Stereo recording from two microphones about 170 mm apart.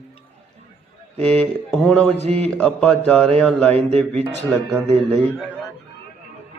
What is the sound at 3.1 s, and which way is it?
A man's voice, 5° left (ahead or behind).